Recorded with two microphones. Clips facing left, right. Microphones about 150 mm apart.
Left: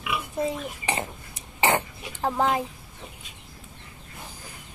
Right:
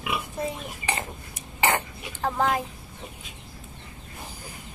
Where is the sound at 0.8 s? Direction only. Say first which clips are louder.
Right 2 dB; 25° left (ahead or behind).